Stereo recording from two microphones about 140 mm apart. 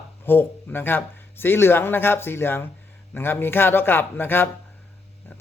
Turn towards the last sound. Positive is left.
turn(degrees=15)  # may be behind; listen again after turning